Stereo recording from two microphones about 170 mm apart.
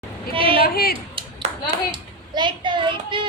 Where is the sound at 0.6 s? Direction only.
65° left (ahead or behind).